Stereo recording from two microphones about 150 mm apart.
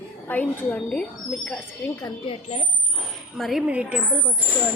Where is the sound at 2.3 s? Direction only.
45° left (ahead or behind).